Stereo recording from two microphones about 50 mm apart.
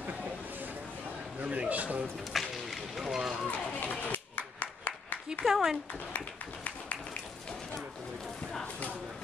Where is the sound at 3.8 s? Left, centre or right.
Left.